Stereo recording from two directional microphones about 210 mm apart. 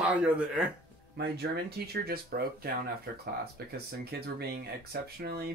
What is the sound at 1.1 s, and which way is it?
Speech, 50° right (ahead or behind).